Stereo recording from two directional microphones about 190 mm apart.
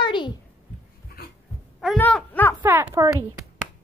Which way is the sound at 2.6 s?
15° right (ahead or behind).